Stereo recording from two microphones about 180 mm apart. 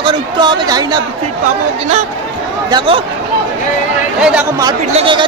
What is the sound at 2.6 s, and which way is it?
Speech, 25° right (ahead or behind).